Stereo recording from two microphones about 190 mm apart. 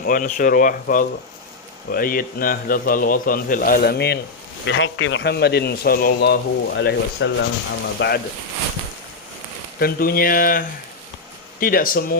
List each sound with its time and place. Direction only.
0.0 s speech: 45° left (ahead or behind)
4.6 s a man's voice: 75° left (ahead or behind)
7.9 s a man's voice: 60° left (ahead or behind)
9.7 s speech: 50° left (ahead or behind)